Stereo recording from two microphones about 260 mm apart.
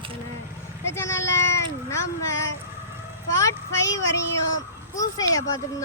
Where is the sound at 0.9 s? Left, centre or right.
Centre.